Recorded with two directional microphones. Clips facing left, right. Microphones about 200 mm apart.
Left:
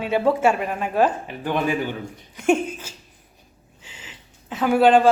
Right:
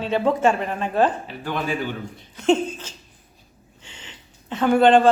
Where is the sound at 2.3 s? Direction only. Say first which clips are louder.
Right 1 dB; 10° left (ahead or behind).